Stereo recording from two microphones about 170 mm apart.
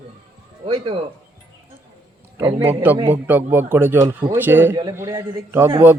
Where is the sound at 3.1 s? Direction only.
10° right (ahead or behind).